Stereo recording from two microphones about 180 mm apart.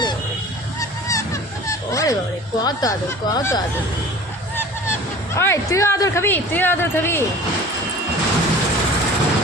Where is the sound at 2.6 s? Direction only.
20° left (ahead or behind).